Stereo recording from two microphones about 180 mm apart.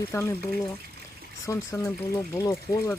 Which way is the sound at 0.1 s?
15° left (ahead or behind).